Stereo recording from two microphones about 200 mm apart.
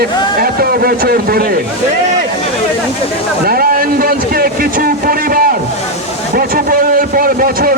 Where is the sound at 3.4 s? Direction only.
50° right (ahead or behind).